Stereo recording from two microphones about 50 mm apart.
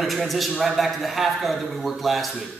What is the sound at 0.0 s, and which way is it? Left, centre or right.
A man's voice, centre.